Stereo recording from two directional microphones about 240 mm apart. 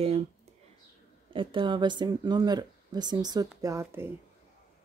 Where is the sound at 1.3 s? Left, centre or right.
Right.